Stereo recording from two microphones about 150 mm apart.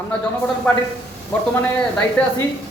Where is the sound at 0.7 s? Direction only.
10° left (ahead or behind).